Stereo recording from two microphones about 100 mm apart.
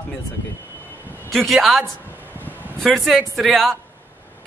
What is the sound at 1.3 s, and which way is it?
Speech, centre (ahead or behind).